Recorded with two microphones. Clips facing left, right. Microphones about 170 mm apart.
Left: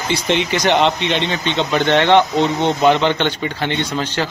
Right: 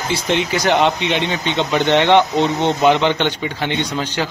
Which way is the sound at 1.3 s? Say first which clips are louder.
Even; 15° right (ahead or behind).